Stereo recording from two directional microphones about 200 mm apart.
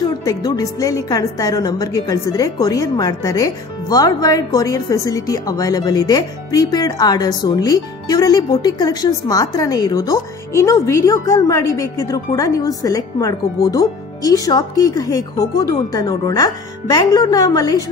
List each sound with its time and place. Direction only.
0.2 s a woman's voice: 15° left (ahead or behind)